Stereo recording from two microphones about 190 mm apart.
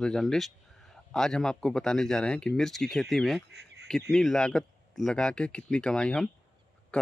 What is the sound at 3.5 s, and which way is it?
Duck, 60° right (ahead or behind).